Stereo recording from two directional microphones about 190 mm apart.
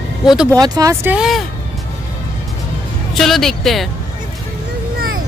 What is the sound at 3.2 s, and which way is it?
Speech, centre (ahead or behind).